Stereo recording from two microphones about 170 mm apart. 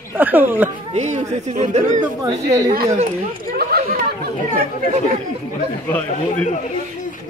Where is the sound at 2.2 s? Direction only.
20° right (ahead or behind).